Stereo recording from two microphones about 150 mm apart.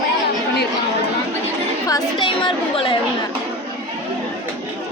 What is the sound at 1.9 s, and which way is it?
Speech, 30° left (ahead or behind).